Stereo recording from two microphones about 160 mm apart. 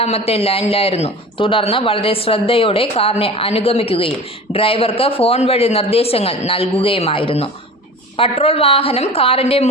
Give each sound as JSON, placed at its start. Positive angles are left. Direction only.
{"t": 0.0, "sound": "a man's voice", "side_deg": 40}